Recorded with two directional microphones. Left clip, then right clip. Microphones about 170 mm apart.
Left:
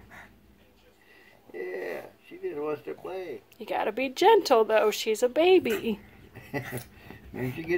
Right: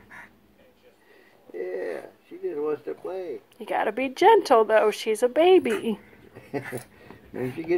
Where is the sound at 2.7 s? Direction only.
35° left (ahead or behind).